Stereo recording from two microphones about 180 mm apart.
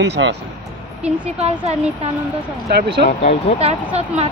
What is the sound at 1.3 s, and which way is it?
Speech, 35° right (ahead or behind).